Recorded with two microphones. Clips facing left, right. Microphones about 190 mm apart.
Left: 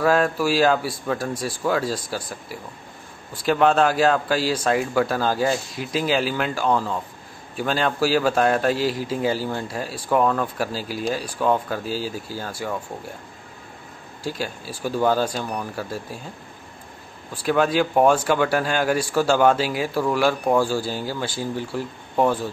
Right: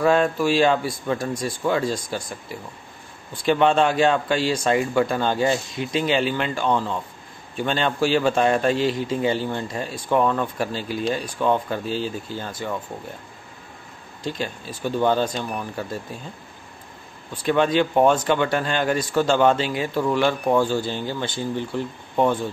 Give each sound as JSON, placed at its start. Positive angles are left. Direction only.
{"t": 0.0, "sound": "a man's voice", "side_deg": 5}
{"t": 3.4, "sound": "a man's voice", "side_deg": 0}
{"t": 14.2, "sound": "a man's voice", "side_deg": 5}
{"t": 17.3, "sound": "a man's voice", "side_deg": 5}